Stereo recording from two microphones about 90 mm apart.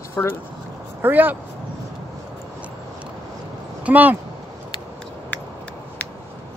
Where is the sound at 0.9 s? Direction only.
20° right (ahead or behind).